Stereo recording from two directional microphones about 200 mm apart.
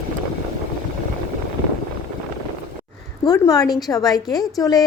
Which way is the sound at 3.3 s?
20° left (ahead or behind).